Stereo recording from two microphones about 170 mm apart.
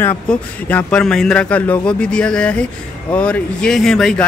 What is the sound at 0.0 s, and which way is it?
A man's voice, 10° left (ahead or behind).